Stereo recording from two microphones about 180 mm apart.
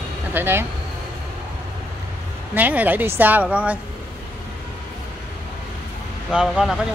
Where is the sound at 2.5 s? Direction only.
10° right (ahead or behind).